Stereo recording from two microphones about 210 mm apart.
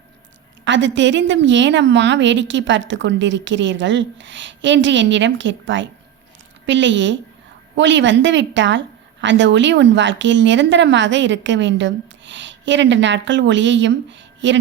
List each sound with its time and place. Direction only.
0.6 s speech: 60° right (ahead or behind)